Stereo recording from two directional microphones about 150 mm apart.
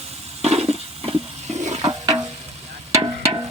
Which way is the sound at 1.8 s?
30° right (ahead or behind).